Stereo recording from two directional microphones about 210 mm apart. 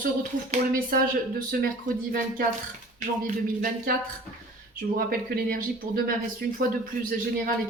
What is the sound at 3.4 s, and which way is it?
Speech, 45° right (ahead or behind).